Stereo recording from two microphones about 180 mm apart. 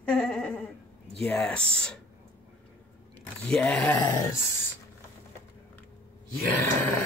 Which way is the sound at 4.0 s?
20° left (ahead or behind).